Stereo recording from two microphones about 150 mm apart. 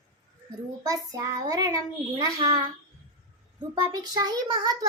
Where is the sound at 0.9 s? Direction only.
25° right (ahead or behind).